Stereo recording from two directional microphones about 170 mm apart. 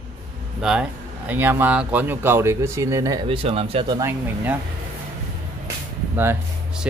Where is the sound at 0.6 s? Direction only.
5° right (ahead or behind).